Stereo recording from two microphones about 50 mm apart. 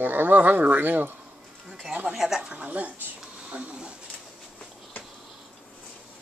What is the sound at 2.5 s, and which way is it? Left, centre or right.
Speech, right.